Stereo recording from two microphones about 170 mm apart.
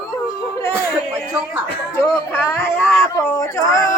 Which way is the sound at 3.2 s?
15° left (ahead or behind).